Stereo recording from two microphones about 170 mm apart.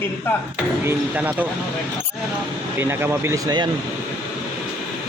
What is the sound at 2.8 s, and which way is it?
Speech, 15° right (ahead or behind).